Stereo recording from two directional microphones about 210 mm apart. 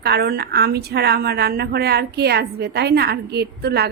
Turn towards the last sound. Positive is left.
turn(degrees=-50)  # may be behind; listen again after turning